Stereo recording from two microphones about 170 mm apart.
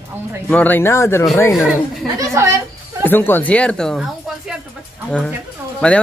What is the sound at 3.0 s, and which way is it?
Speech, 10° left (ahead or behind).